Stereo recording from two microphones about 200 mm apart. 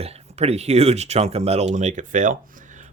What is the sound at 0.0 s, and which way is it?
Speech, 30° right (ahead or behind).